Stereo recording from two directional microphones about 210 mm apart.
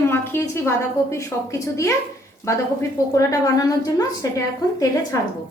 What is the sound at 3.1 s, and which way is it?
A woman's voice, 15° left (ahead or behind).